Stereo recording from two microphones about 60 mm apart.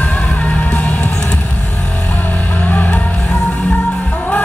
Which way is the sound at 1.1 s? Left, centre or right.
Centre.